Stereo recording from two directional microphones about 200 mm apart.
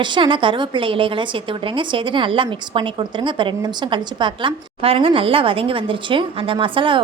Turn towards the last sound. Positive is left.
turn(degrees=-25)  # may be behind; listen again after turning